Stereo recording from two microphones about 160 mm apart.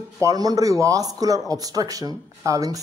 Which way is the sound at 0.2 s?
20° right (ahead or behind).